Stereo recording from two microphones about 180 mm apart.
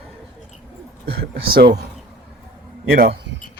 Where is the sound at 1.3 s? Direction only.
60° right (ahead or behind).